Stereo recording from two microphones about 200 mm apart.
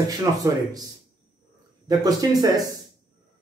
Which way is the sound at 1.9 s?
20° right (ahead or behind).